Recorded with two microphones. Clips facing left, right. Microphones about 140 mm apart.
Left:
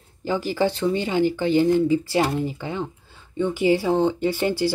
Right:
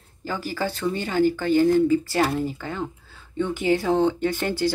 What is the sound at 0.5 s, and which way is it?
Speech, 20° left (ahead or behind).